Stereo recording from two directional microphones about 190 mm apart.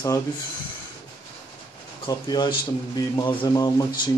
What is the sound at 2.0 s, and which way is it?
Speech, 20° left (ahead or behind).